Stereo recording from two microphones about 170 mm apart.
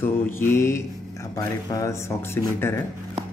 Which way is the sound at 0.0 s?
15° left (ahead or behind).